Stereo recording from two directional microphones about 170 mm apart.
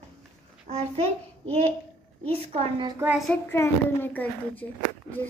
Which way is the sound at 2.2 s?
35° right (ahead or behind).